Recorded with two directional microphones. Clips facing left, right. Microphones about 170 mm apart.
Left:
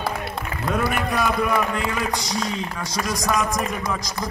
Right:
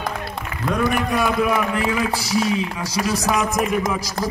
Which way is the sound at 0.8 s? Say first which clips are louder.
Right 4 dB; centre (ahead or behind).